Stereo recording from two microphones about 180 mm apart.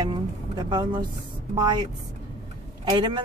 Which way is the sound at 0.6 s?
25° right (ahead or behind).